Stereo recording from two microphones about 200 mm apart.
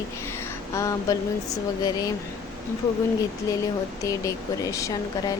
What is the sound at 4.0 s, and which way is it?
Speech, 15° left (ahead or behind).